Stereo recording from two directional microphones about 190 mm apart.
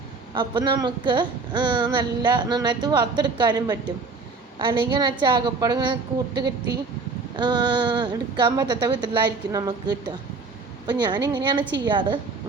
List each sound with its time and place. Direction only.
0.3 s a woman's voice: 25° right (ahead or behind)